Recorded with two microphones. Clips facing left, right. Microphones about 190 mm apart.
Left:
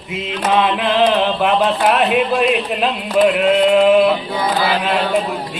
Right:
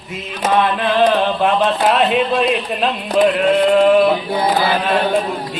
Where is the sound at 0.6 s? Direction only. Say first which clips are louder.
Right 1 dB; 10° left (ahead or behind).